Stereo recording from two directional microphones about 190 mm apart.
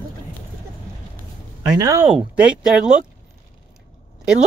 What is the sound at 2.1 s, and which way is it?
Speech, 5° right (ahead or behind).